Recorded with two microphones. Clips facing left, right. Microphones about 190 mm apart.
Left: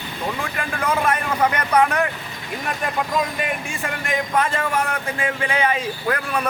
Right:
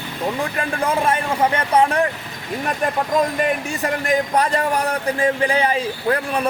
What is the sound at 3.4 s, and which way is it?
Speech, 40° right (ahead or behind).